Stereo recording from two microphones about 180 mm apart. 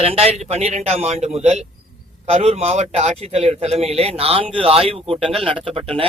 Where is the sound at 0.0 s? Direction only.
35° right (ahead or behind).